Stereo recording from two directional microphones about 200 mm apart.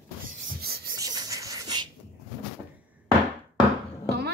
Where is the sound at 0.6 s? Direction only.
50° right (ahead or behind).